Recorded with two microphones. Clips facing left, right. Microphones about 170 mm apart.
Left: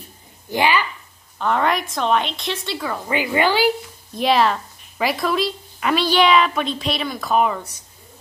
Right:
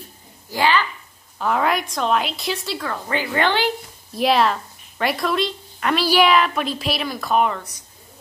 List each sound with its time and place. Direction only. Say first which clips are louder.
0.5 s a woman's voice: even; 15° left (ahead or behind)
1.4 s a woman's voice: left 1 dB; 5° right (ahead or behind)
2.8 s a woman's voice: left 2 dB; 10° left (ahead or behind)